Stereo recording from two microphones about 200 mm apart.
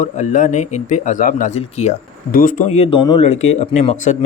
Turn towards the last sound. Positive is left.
turn(degrees=35)  # may be behind; listen again after turning